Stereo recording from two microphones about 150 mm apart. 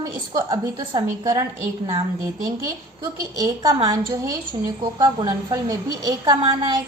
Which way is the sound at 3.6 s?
30° right (ahead or behind).